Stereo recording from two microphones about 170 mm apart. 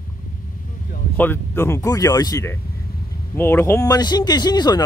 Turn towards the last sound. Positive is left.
turn(degrees=25)  # may be behind; listen again after turning